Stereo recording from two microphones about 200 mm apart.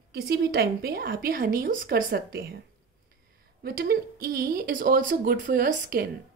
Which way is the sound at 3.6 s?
50° right (ahead or behind).